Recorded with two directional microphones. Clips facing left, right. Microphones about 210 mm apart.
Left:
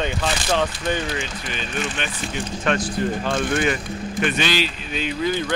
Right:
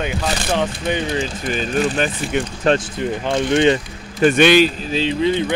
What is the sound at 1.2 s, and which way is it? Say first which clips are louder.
Speech: right 7 dB; 40° right (ahead or behind).